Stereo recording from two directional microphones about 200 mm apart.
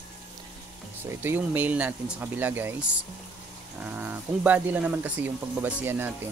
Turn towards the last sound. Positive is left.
turn(degrees=-10)  # may be behind; listen again after turning